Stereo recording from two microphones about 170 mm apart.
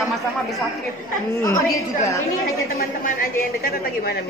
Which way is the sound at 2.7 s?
65° left (ahead or behind).